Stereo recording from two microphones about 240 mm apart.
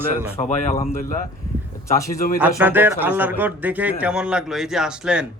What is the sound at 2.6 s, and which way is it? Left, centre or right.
A man's voice, centre.